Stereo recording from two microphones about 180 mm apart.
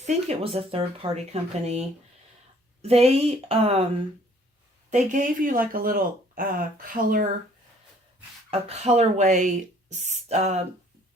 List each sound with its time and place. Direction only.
0.0 s speech: 40° right (ahead or behind)
2.8 s speech: 35° right (ahead or behind)
4.9 s speech: 45° right (ahead or behind)
8.4 s speech: 35° right (ahead or behind)